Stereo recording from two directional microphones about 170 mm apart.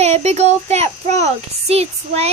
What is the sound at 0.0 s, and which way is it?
A child's voice, 40° right (ahead or behind).